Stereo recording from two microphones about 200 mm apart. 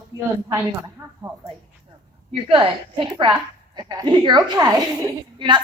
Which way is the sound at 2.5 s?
25° right (ahead or behind).